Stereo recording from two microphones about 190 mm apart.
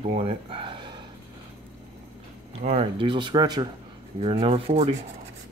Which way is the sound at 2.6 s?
35° right (ahead or behind).